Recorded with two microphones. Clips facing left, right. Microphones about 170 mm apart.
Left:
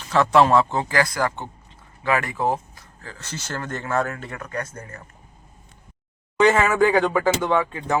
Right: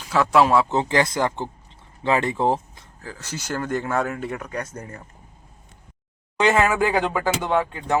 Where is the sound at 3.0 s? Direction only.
10° right (ahead or behind).